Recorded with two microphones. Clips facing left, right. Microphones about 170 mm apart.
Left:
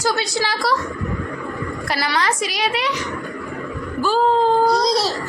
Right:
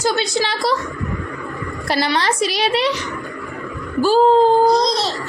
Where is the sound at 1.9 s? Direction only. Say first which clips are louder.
Right 4 dB; 25° right (ahead or behind).